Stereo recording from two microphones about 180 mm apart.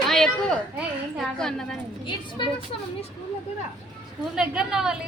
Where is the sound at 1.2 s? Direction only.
5° left (ahead or behind).